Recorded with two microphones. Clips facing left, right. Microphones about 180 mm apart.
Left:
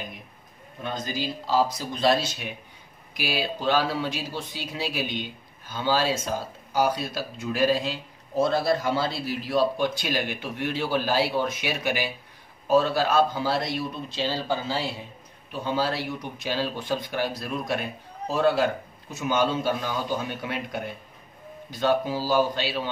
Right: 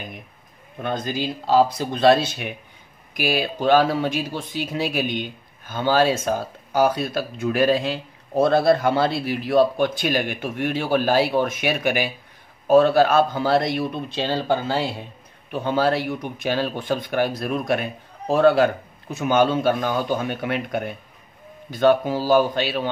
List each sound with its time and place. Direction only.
0.8 s speech: 55° right (ahead or behind)